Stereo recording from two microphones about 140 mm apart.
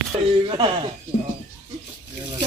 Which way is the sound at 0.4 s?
35° right (ahead or behind).